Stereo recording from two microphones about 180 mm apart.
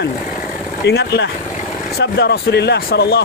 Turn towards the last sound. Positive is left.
turn(degrees=65)  # may be behind; listen again after turning